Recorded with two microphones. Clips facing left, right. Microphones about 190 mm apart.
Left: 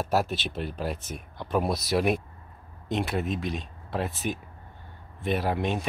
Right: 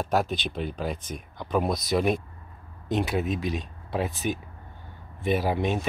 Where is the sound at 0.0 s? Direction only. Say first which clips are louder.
Right 1 dB; 5° left (ahead or behind).